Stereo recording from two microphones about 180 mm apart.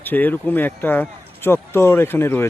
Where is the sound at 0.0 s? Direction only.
10° left (ahead or behind).